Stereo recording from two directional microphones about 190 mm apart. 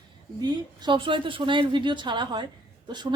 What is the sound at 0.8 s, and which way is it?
A woman's voice, 25° right (ahead or behind).